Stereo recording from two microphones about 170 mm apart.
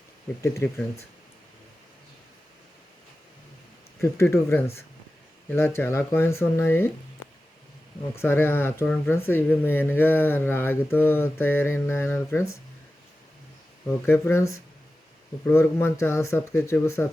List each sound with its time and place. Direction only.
0.4 s mantra: 15° left (ahead or behind)
4.0 s mantra: 15° left (ahead or behind)
8.1 s mantra: 15° left (ahead or behind)
13.8 s mantra: 15° left (ahead or behind)